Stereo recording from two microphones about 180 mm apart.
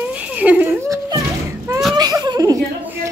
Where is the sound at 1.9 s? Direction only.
20° right (ahead or behind).